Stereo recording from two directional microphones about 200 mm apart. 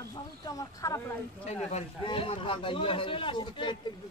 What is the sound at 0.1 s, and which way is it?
Speech, 20° left (ahead or behind).